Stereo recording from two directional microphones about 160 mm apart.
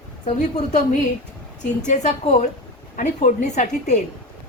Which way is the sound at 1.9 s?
45° left (ahead or behind).